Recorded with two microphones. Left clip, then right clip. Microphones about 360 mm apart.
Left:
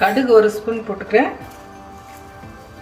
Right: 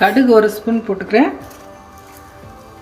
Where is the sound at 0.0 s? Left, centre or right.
Right.